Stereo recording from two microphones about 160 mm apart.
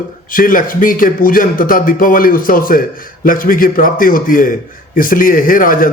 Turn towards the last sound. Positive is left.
turn(degrees=60)  # may be behind; listen again after turning